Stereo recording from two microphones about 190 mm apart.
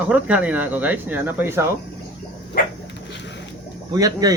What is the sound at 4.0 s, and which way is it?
Speech, 20° right (ahead or behind).